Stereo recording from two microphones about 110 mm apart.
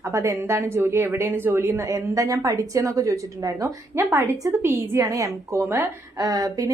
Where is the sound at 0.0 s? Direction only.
25° right (ahead or behind).